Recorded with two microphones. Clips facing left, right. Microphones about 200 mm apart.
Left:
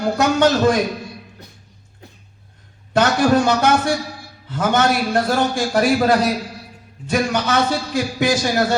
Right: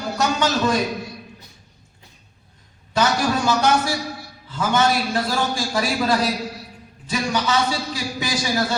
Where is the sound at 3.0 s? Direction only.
55° left (ahead or behind).